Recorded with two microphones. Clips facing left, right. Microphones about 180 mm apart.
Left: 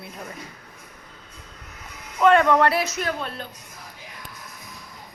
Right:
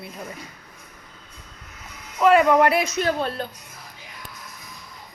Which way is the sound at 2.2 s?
5° right (ahead or behind).